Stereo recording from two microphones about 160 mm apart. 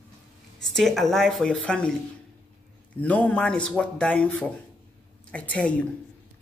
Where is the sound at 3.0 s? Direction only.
10° left (ahead or behind).